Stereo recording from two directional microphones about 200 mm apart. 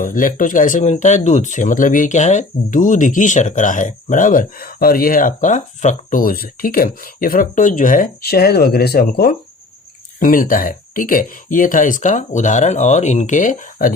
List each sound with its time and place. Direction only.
0.0 s speech: 45° left (ahead or behind)